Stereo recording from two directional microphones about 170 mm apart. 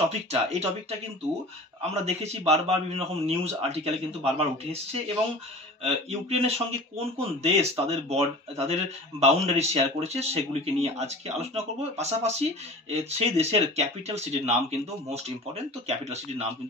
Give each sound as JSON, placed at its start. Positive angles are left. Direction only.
{"t": 0.1, "sound": "speech", "side_deg": -40}